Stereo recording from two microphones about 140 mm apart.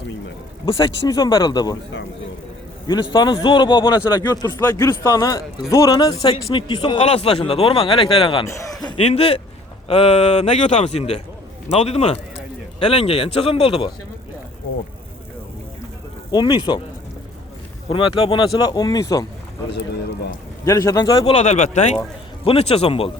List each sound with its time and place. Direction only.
0.6 s a man's voice: 35° left (ahead or behind)
2.8 s a man's voice: 30° left (ahead or behind)
8.4 s a man's voice: 20° left (ahead or behind)
9.0 s speech: 45° left (ahead or behind)
16.3 s speech: 35° left (ahead or behind)
17.8 s speech: 35° left (ahead or behind)
20.7 s a man's voice: 20° left (ahead or behind)
21.3 s speech: 55° left (ahead or behind)